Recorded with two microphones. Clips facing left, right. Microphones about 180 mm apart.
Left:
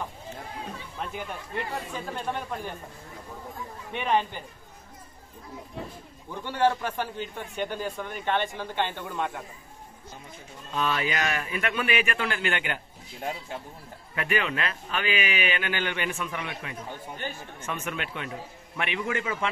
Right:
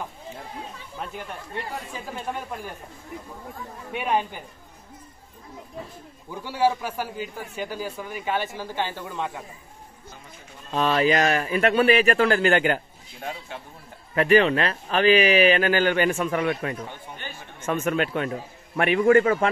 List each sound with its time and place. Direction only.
3.9 s a man's voice: 10° right (ahead or behind)
6.3 s a man's voice: 10° right (ahead or behind)
10.7 s speech: 35° right (ahead or behind)
14.1 s a man's voice: 35° right (ahead or behind)